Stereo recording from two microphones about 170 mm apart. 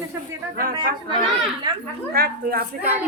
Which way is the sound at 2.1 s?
65° right (ahead or behind).